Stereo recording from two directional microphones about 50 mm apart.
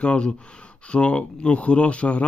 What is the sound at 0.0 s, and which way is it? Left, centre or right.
Speech, left.